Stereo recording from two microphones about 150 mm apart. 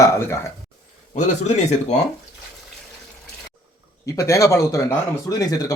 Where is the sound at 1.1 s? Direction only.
50° left (ahead or behind).